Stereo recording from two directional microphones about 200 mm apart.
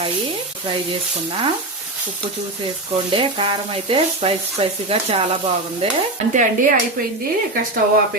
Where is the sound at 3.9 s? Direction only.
30° right (ahead or behind).